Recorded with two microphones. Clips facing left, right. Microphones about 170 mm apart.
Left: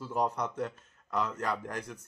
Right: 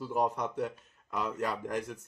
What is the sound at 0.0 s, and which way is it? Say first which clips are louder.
Speech: right 1 dB; 20° right (ahead or behind).